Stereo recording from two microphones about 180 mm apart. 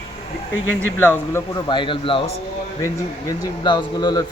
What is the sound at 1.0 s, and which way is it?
Speech, 10° left (ahead or behind).